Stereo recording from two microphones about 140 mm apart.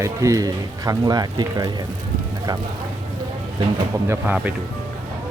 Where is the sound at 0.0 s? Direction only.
20° right (ahead or behind).